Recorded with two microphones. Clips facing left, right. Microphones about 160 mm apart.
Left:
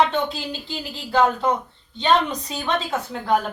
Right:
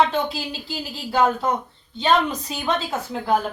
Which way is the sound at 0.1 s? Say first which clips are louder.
Even; 5° right (ahead or behind).